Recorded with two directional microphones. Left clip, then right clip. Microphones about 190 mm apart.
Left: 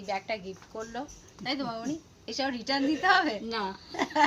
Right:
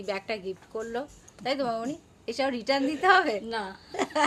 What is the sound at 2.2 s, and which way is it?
A woman's voice, 25° right (ahead or behind).